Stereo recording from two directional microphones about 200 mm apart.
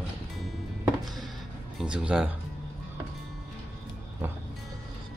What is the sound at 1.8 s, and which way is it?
Speech, 5° right (ahead or behind).